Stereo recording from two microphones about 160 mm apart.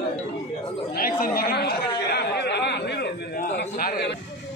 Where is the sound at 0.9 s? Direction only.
65° left (ahead or behind).